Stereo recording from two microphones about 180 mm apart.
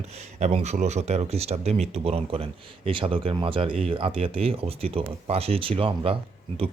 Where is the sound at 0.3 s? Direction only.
40° right (ahead or behind).